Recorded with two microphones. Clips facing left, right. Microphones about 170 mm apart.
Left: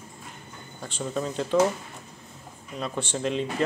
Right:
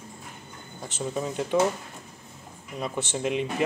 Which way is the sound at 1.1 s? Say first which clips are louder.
Left 1 dB; 15° right (ahead or behind).